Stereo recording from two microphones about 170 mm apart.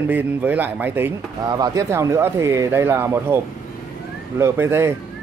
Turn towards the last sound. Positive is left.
turn(degrees=-15)  # may be behind; listen again after turning